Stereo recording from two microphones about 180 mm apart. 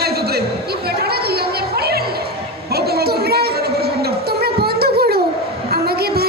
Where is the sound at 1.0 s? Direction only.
60° right (ahead or behind).